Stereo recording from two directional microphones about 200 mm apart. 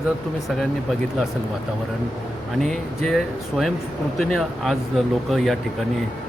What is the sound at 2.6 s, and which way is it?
Speech, centre (ahead or behind).